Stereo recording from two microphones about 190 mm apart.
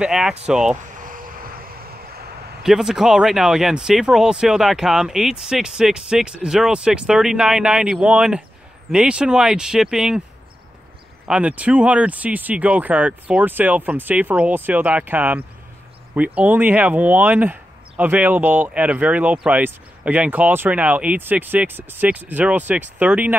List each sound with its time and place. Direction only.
0.0 s speech: 5° right (ahead or behind)
0.8 s vehicle: 45° right (ahead or behind)
2.6 s speech: centre (ahead or behind)
11.2 s speech: 5° right (ahead or behind)